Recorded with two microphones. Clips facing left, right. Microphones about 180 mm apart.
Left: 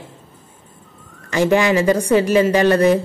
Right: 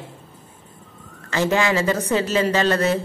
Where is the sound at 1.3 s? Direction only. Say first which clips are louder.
Left 5 dB; 15° left (ahead or behind).